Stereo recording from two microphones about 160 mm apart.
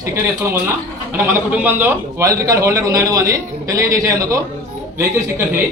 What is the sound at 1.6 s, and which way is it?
A man's voice, 10° right (ahead or behind).